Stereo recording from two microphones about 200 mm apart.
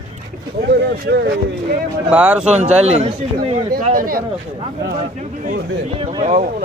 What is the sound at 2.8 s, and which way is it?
Speech, 30° right (ahead or behind).